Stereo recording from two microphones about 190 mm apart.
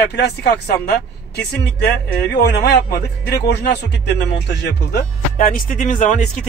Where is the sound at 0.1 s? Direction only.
60° left (ahead or behind).